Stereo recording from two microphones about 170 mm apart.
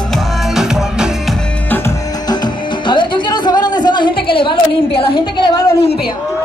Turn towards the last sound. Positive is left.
turn(degrees=25)  # may be behind; listen again after turning